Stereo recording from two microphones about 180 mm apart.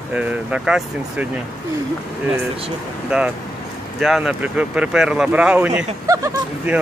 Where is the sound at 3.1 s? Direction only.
5° right (ahead or behind).